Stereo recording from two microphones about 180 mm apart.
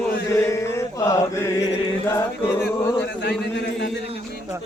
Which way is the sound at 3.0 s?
65° left (ahead or behind).